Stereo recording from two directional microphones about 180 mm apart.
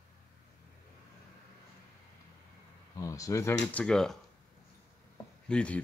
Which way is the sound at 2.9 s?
20° left (ahead or behind).